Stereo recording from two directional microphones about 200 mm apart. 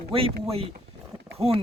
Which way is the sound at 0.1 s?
30° right (ahead or behind).